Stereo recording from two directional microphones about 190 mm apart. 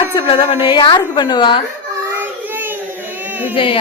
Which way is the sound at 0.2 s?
30° left (ahead or behind).